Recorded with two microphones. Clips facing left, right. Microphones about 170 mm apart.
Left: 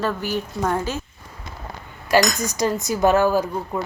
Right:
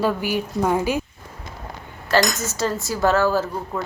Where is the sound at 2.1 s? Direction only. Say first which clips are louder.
Left 1 dB; 15° left (ahead or behind).